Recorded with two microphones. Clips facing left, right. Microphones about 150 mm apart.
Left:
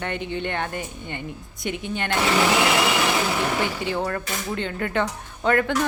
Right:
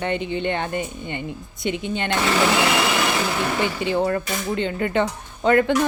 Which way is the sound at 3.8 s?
20° right (ahead or behind).